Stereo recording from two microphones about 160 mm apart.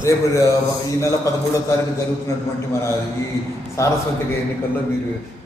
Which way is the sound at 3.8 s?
20° left (ahead or behind).